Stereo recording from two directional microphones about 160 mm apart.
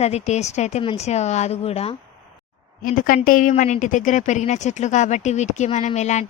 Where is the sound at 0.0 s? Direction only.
45° left (ahead or behind).